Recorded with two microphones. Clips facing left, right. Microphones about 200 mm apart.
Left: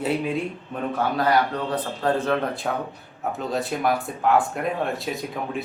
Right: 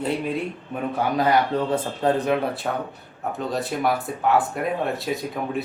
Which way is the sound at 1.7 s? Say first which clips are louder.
Even; 25° right (ahead or behind).